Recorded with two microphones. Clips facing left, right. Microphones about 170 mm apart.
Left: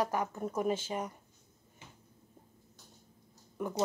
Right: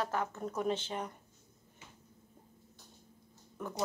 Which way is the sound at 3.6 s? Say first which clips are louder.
Left 5 dB; 10° left (ahead or behind).